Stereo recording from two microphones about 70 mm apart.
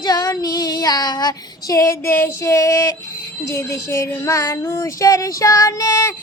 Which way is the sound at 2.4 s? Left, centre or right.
Left.